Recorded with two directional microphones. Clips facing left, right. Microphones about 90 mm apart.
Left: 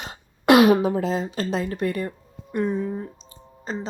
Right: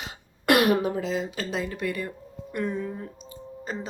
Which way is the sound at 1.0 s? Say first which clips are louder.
Left 4 dB; 40° left (ahead or behind).